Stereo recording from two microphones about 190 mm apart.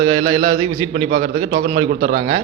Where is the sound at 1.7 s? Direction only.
50° right (ahead or behind).